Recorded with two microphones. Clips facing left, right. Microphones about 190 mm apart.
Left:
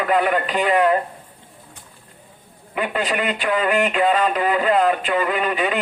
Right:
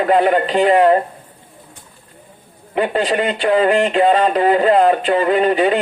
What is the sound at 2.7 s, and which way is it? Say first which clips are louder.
Speech: right 6 dB; 30° right (ahead or behind).